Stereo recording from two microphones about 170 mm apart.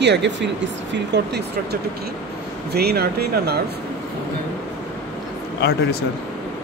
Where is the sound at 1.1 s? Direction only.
75° right (ahead or behind).